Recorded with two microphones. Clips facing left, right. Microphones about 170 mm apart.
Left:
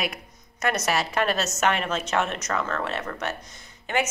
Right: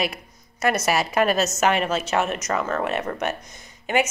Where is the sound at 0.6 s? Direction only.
5° right (ahead or behind).